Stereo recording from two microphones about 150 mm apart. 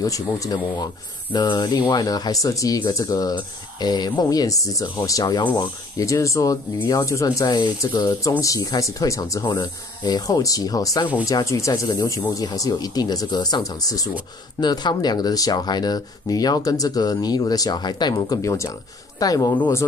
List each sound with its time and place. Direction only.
0.0 s speech: 25° left (ahead or behind)